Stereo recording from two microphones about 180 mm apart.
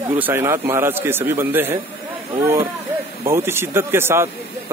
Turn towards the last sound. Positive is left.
turn(degrees=-15)  # may be behind; listen again after turning